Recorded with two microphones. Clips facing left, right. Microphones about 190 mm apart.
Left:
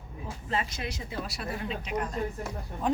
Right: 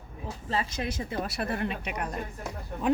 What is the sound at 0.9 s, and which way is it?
Speech, 50° right (ahead or behind).